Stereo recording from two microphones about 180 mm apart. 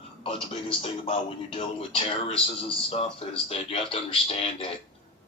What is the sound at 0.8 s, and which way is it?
Speech, 30° left (ahead or behind).